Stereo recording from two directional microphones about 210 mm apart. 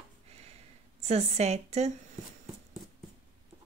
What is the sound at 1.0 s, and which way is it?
Speech, 30° right (ahead or behind).